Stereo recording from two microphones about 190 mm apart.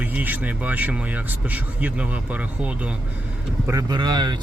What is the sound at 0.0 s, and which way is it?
Speech, 10° right (ahead or behind).